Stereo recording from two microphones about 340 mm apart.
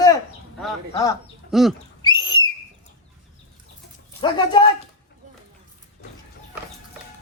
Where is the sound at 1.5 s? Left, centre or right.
Centre.